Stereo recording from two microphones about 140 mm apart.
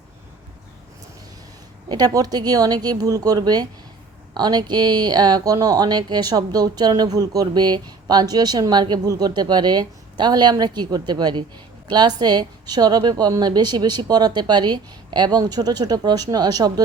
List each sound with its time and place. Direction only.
1.9 s speech: 25° right (ahead or behind)